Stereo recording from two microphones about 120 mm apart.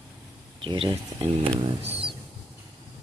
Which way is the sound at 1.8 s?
55° right (ahead or behind).